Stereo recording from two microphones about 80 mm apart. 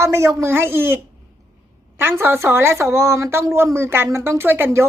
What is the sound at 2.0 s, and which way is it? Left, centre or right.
A woman's voice, right.